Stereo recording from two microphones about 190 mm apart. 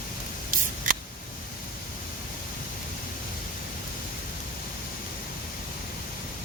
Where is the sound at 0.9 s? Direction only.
45° right (ahead or behind).